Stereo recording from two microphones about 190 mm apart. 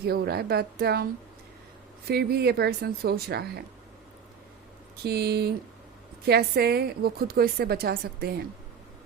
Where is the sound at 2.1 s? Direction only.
55° right (ahead or behind).